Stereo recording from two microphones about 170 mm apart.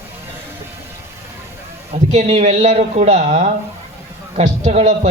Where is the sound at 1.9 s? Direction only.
45° right (ahead or behind).